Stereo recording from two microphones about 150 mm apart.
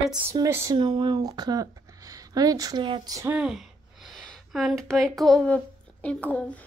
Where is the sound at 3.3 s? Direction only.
5° right (ahead or behind).